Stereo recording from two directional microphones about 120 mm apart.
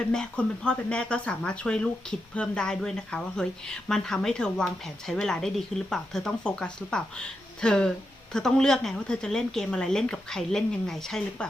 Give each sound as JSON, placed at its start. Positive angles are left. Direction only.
{"t": 0.0, "sound": "speech", "side_deg": 5}